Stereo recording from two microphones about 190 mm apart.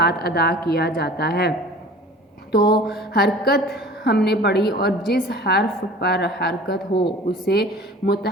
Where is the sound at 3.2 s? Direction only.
55° left (ahead or behind).